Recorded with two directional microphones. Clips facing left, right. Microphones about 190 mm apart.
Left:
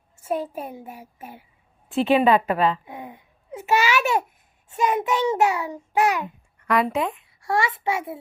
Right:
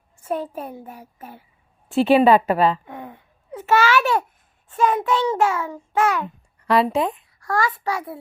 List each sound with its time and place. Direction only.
0.3 s a child's voice: 10° left (ahead or behind)
2.0 s a woman's voice: 35° right (ahead or behind)
2.8 s a child's voice: 10° left (ahead or behind)
6.9 s a woman's voice: 35° right (ahead or behind)
7.3 s a child's voice: 25° left (ahead or behind)